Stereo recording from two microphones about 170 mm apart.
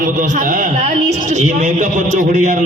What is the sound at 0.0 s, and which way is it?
A man's voice, 50° right (ahead or behind).